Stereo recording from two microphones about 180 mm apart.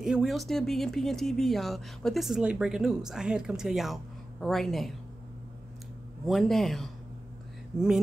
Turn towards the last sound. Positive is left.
turn(degrees=-5)  # may be behind; listen again after turning